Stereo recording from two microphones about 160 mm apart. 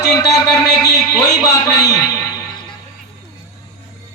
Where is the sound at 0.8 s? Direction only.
25° left (ahead or behind).